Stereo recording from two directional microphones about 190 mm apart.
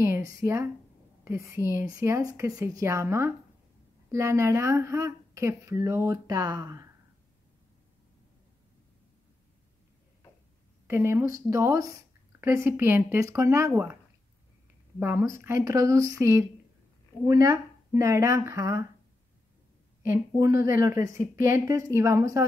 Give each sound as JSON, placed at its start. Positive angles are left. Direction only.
{"t": 0.0, "sound": "speech", "side_deg": -15}
{"t": 10.9, "sound": "speech", "side_deg": -15}
{"t": 15.0, "sound": "speech", "side_deg": -10}
{"t": 20.1, "sound": "speech", "side_deg": -15}